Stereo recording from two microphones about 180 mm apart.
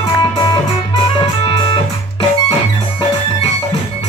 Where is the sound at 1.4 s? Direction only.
30° left (ahead or behind).